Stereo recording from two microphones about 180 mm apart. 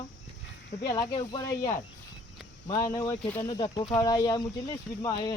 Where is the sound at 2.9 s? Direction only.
20° left (ahead or behind).